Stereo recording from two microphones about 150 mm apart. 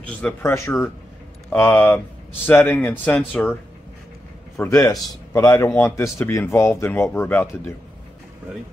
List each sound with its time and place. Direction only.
0.2 s a man's voice: 15° left (ahead or behind)
4.6 s a man's voice: 20° left (ahead or behind)